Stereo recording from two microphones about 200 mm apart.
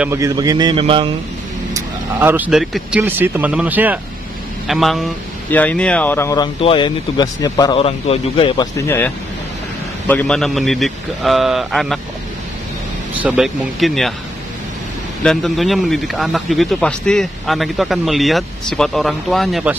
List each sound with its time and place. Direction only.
0.0 s a man's voice: 15° right (ahead or behind)
1.7 s speech: 15° right (ahead or behind); by 8.8 s 25° left (ahead or behind)
8.8 s speech: 10° left (ahead or behind)
13.1 s speech: 5° right (ahead or behind)
15.2 s speech: centre (ahead or behind)